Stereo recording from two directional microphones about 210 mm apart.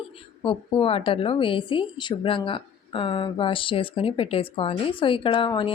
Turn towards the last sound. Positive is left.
turn(degrees=25)  # may be behind; listen again after turning